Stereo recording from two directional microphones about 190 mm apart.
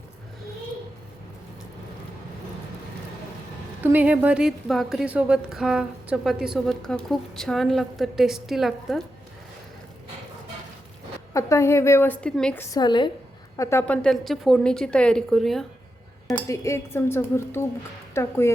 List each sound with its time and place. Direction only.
3.8 s a woman's voice: 10° right (ahead or behind)
11.3 s a woman's voice: 15° left (ahead or behind)
12.7 s a woman's voice: 25° left (ahead or behind); by 15.6 s centre (ahead or behind)
16.5 s a woman's voice: 15° left (ahead or behind)